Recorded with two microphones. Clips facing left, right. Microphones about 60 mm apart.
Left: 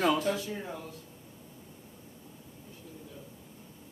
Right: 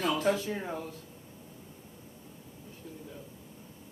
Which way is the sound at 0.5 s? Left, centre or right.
Right.